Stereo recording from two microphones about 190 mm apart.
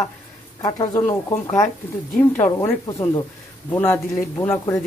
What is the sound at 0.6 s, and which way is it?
Speech, 20° left (ahead or behind).